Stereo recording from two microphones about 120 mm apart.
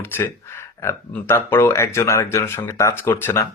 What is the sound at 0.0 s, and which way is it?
Speech, 20° left (ahead or behind).